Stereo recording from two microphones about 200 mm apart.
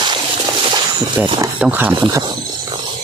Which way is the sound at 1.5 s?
5° right (ahead or behind).